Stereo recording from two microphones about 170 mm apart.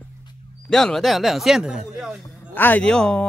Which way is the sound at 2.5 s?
10° left (ahead or behind).